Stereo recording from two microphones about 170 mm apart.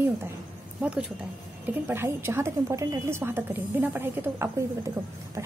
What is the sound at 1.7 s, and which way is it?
A woman's voice, 15° right (ahead or behind).